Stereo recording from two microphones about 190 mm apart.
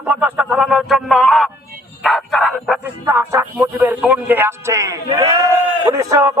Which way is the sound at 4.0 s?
10° right (ahead or behind).